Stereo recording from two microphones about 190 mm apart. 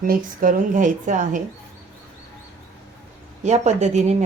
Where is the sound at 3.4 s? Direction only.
35° right (ahead or behind).